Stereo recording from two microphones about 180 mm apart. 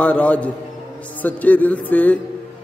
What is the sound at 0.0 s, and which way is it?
A man's voice, 5° left (ahead or behind).